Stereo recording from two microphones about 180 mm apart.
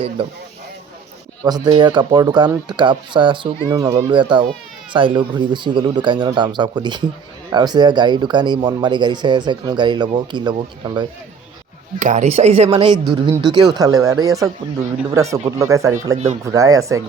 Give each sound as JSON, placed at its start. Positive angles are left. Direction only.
{"t": 1.5, "sound": "speech", "side_deg": -20}
{"t": 11.9, "sound": "speech", "side_deg": -40}
{"t": 16.1, "sound": "speech", "side_deg": -40}
{"t": 16.5, "sound": "speech", "side_deg": -20}